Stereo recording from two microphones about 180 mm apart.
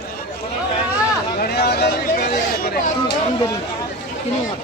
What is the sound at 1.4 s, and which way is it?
Chatter, 60° left (ahead or behind).